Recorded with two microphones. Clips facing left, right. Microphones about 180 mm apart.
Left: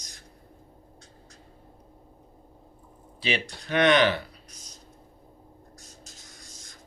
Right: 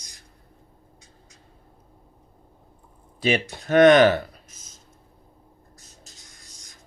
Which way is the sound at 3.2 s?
50° right (ahead or behind).